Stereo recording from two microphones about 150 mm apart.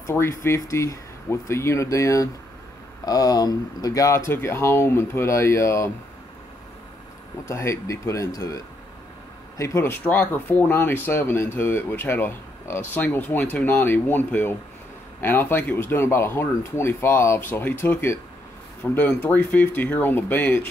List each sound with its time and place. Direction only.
0.0 s speech: 15° left (ahead or behind)
7.4 s speech: 20° left (ahead or behind)